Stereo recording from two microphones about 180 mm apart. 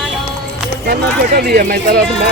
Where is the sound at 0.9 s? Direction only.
60° right (ahead or behind).